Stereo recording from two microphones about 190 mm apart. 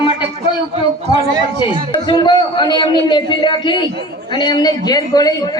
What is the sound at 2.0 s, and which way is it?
A man's voice, 20° left (ahead or behind).